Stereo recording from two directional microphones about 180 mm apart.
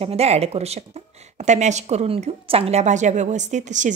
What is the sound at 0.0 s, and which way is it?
A woman's voice, 35° right (ahead or behind).